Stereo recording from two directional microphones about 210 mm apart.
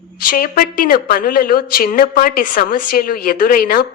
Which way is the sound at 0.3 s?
45° left (ahead or behind).